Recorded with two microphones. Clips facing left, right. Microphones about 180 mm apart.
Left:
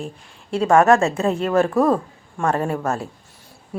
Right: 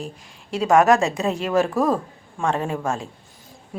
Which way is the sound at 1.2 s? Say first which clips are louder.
Left 3 dB; 35° left (ahead or behind).